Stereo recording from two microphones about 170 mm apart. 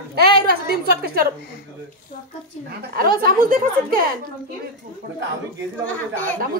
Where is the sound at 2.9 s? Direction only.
60° right (ahead or behind).